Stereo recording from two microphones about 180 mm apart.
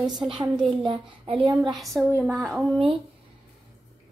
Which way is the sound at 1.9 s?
10° right (ahead or behind).